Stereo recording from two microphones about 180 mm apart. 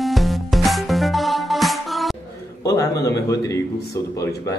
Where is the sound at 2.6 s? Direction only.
20° left (ahead or behind).